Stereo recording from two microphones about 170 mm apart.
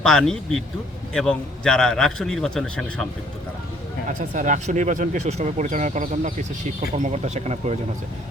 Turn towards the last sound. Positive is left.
turn(degrees=-40)  # may be behind; listen again after turning